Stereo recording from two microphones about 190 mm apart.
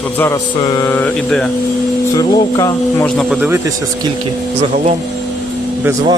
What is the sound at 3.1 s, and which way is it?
Speech, 5° right (ahead or behind).